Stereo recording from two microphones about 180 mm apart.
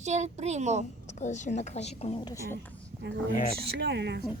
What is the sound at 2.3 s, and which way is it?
Speech, 15° left (ahead or behind).